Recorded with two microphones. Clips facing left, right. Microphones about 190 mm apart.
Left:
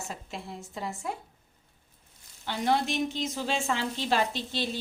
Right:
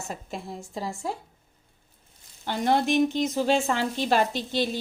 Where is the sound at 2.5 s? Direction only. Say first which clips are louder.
Right 4 dB; 50° right (ahead or behind).